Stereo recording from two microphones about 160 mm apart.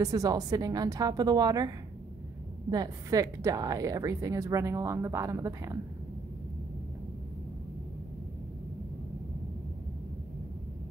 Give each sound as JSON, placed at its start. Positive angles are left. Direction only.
{"t": 0.0, "sound": "a woman's voice", "side_deg": -20}
{"t": 2.7, "sound": "a woman's voice", "side_deg": -25}